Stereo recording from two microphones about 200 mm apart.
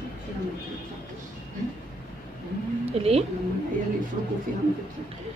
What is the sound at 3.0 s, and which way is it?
Speech, 30° right (ahead or behind).